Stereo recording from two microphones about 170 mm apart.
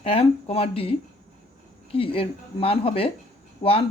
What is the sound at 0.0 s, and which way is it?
Speech, 35° left (ahead or behind).